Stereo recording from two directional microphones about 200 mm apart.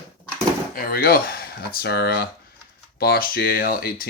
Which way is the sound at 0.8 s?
45° left (ahead or behind).